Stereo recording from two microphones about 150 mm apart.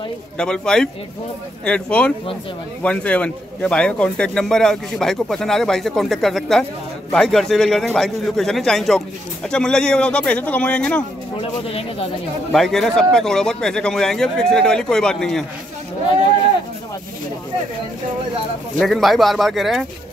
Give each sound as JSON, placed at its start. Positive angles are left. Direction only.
{"t": 0.4, "sound": "speech", "side_deg": 5}
{"t": 11.6, "sound": "speech", "side_deg": 40}
{"t": 12.5, "sound": "speech", "side_deg": 5}
{"t": 18.8, "sound": "speech", "side_deg": 0}